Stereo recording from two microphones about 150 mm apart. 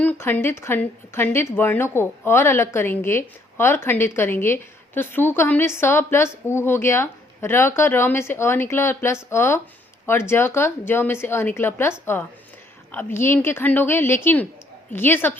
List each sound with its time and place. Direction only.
0.0 s a woman's voice: 15° left (ahead or behind)